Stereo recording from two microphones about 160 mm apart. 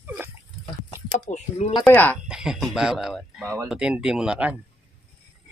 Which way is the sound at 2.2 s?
5° right (ahead or behind).